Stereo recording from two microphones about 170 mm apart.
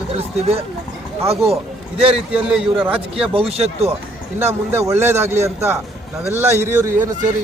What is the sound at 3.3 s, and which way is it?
Speech, 35° right (ahead or behind).